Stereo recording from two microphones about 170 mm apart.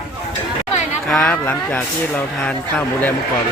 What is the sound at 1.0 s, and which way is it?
Speech, 5° left (ahead or behind).